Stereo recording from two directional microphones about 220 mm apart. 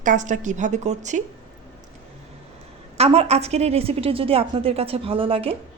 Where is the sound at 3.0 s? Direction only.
30° right (ahead or behind).